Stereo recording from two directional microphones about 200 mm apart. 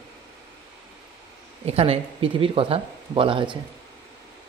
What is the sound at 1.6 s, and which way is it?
Speech, 30° right (ahead or behind).